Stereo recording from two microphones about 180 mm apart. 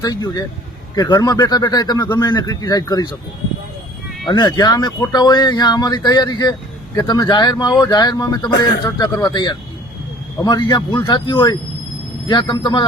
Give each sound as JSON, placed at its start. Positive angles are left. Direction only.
{"t": 0.0, "sound": "speech", "side_deg": 20}
{"t": 4.3, "sound": "speech", "side_deg": 25}